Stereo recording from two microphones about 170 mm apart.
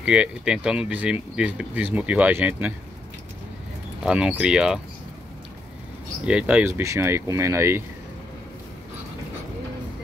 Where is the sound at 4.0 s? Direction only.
5° right (ahead or behind).